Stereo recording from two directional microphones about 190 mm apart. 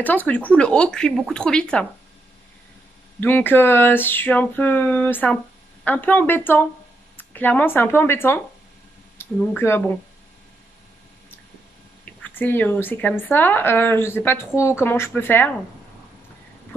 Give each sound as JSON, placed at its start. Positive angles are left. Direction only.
{"t": 0.3, "sound": "a woman's voice", "side_deg": 5}
{"t": 3.2, "sound": "a woman's voice", "side_deg": 10}
{"t": 12.0, "sound": "a woman's voice", "side_deg": 10}